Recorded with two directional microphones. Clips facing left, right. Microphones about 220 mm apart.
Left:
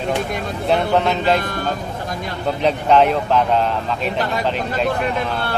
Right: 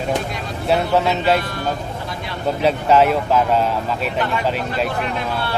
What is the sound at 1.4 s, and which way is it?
Speech, 45° left (ahead or behind).